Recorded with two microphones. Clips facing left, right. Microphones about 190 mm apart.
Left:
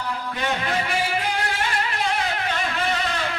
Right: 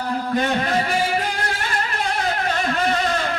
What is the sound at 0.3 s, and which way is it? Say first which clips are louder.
Music: right 5 dB; 45° right (ahead or behind).